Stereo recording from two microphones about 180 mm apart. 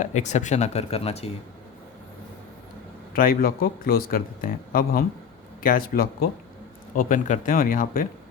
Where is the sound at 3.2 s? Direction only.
55° left (ahead or behind).